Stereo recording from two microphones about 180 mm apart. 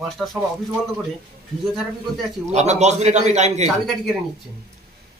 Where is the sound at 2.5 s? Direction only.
40° right (ahead or behind).